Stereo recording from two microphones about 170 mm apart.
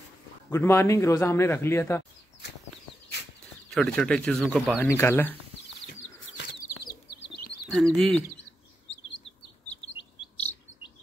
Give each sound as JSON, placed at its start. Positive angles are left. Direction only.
{"t": 0.5, "sound": "a man's voice", "side_deg": 15}
{"t": 3.7, "sound": "speech", "side_deg": 5}
{"t": 4.8, "sound": "a man's voice", "side_deg": 15}
{"t": 6.2, "sound": "bird flight", "side_deg": 90}
{"t": 7.7, "sound": "speech", "side_deg": 0}
{"t": 10.3, "sound": "chirp", "side_deg": 10}